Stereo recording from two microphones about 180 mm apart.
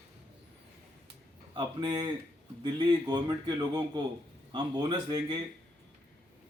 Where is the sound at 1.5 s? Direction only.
25° right (ahead or behind).